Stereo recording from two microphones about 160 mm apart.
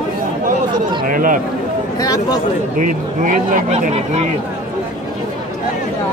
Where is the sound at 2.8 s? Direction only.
55° right (ahead or behind).